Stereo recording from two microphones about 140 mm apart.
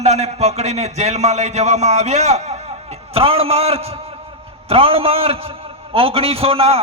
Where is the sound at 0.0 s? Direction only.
50° right (ahead or behind).